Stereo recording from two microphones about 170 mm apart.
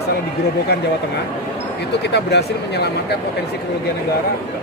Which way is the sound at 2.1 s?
80° left.